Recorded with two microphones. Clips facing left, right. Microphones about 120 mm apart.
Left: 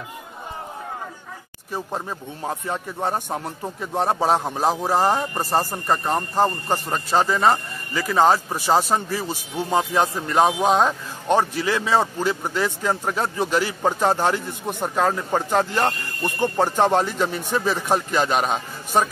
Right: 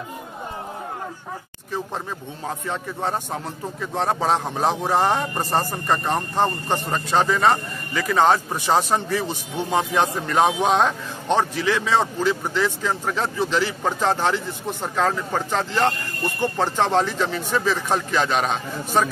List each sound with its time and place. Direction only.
1.7 s a man's voice: 10° left (ahead or behind)